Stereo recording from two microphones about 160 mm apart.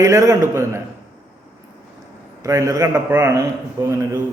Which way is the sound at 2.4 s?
20° right (ahead or behind).